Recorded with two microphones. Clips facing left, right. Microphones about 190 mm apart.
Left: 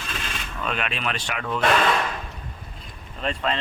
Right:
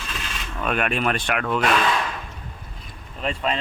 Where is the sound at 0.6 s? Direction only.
50° right (ahead or behind); by 1.6 s 65° right (ahead or behind).